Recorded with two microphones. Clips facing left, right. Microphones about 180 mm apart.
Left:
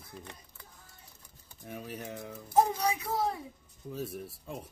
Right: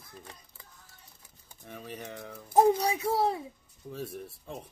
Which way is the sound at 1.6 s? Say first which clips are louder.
Left 1 dB; 10° left (ahead or behind).